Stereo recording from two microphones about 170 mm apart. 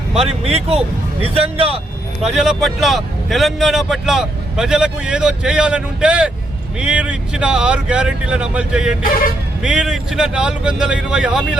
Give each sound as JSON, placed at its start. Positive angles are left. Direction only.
{"t": 0.2, "sound": "speech", "side_deg": -35}
{"t": 2.2, "sound": "speech", "side_deg": 0}